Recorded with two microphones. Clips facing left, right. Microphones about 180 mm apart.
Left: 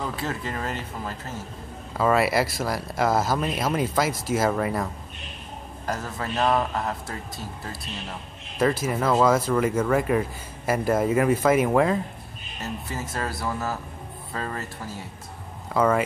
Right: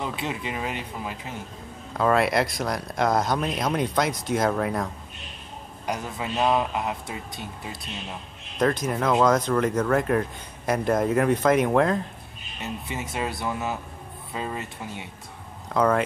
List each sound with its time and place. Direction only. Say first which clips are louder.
0.0 s speech: even; 20° right (ahead or behind)
2.0 s speech: even; 5° left (ahead or behind)
5.9 s a man's voice: even; 15° right (ahead or behind)
8.5 s speech: even; 5° left (ahead or behind)
13.3 s speech: even; centre (ahead or behind)
14.3 s speech: even; 15° right (ahead or behind)
15.7 s speech: even; 5° left (ahead or behind)